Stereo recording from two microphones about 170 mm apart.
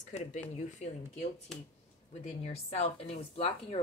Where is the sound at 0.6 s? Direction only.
45° left (ahead or behind).